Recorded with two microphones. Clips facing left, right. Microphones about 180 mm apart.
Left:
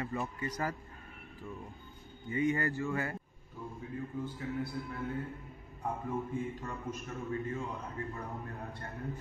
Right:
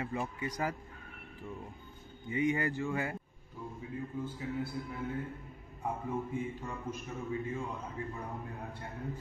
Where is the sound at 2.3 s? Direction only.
15° right (ahead or behind).